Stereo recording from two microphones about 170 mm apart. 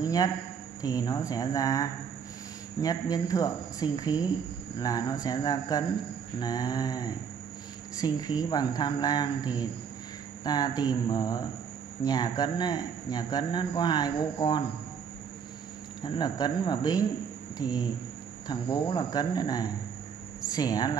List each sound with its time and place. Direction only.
0.0 s a sound: 20° left (ahead or behind)
0.8 s speech: 25° left (ahead or behind)
16.0 s speech: 25° left (ahead or behind)